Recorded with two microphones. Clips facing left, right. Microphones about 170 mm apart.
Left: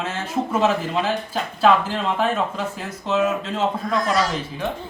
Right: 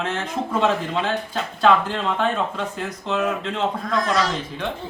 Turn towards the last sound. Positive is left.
turn(degrees=5)  # may be behind; listen again after turning